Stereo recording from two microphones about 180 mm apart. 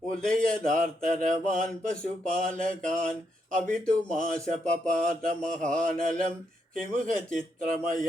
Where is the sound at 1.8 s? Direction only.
5° left (ahead or behind).